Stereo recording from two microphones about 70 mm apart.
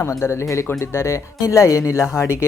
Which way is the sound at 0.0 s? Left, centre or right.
Left.